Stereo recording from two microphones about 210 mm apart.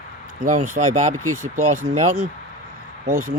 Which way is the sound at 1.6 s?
35° right (ahead or behind).